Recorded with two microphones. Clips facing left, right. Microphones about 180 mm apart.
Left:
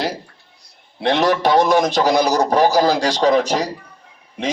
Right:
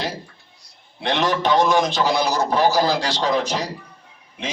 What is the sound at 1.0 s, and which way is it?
A man's voice, 40° left (ahead or behind).